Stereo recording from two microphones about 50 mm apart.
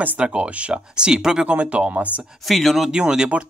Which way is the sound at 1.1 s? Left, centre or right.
Centre.